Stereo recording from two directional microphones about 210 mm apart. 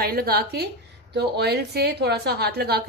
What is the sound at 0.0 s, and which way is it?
A woman's voice, 45° right (ahead or behind).